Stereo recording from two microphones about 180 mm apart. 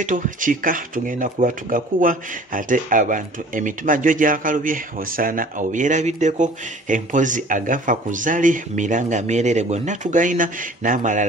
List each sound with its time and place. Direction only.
0.0 s speech: 45° right (ahead or behind)